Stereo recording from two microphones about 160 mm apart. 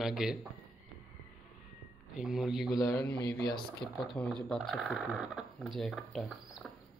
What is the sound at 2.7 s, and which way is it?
Mantra, 20° left (ahead or behind).